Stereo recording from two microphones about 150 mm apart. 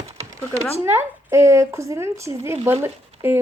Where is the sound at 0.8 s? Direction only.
15° right (ahead or behind).